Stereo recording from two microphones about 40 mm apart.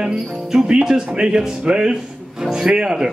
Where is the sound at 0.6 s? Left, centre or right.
Centre.